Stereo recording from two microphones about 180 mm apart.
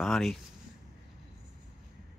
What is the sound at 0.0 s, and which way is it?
Speech, centre (ahead or behind).